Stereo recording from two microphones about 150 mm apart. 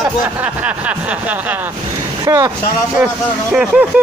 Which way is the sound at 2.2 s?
25° right (ahead or behind).